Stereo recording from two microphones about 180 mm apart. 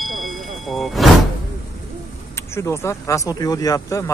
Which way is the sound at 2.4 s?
15° left (ahead or behind).